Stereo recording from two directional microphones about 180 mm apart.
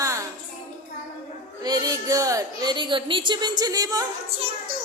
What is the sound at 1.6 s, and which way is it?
A woman's voice, 20° right (ahead or behind).